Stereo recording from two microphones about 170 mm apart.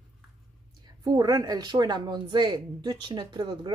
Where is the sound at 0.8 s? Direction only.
25° right (ahead or behind).